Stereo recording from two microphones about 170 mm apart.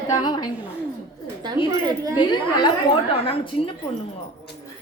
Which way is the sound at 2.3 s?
25° left (ahead or behind).